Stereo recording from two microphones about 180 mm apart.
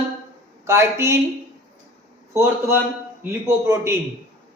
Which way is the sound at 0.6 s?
15° right (ahead or behind).